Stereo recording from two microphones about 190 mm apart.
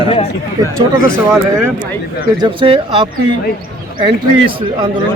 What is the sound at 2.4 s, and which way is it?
Speech, 25° right (ahead or behind).